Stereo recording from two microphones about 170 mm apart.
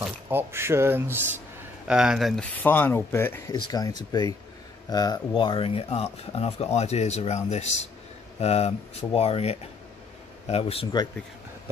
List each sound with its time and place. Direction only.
0.0 s speech: 10° right (ahead or behind); by 3.5 s 15° left (ahead or behind)
3.5 s speech: 25° left (ahead or behind)